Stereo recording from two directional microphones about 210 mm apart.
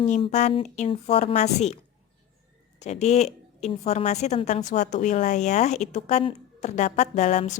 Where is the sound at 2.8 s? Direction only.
30° left (ahead or behind).